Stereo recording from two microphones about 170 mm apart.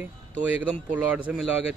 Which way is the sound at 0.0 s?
10° right (ahead or behind).